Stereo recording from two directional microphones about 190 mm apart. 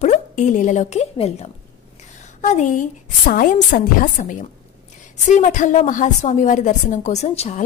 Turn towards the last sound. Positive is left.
turn(degrees=35)  # may be behind; listen again after turning